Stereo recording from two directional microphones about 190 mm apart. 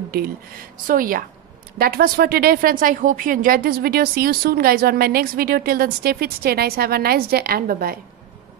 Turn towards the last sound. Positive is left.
turn(degrees=-50)  # may be behind; listen again after turning